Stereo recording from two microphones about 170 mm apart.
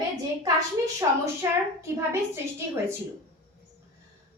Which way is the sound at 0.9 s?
15° right (ahead or behind).